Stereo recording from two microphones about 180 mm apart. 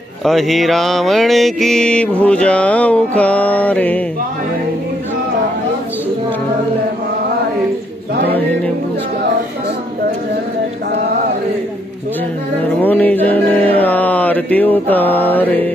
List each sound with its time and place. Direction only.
0.2 s mantra: centre (ahead or behind)
12.8 s mantra: 10° left (ahead or behind)